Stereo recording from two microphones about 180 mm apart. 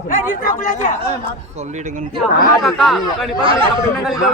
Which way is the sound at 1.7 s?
40° right (ahead or behind).